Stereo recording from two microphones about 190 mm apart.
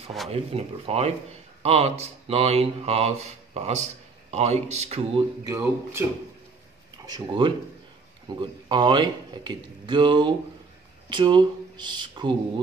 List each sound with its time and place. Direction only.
0.3 s speech: 30° right (ahead or behind)
5.4 s speech: 15° right (ahead or behind)
7.1 s speech: 25° right (ahead or behind)